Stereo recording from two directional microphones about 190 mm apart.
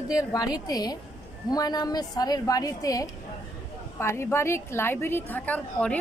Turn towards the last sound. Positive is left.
turn(degrees=5)  # may be behind; listen again after turning